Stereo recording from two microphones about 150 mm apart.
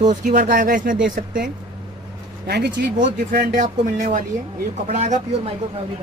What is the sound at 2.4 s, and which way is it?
Speech, 90° right.